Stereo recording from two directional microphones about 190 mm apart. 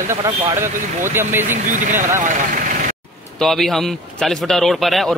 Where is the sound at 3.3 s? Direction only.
Centre (ahead or behind).